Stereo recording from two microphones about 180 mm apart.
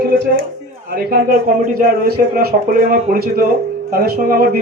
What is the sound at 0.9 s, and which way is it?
A man's voice, 50° right (ahead or behind).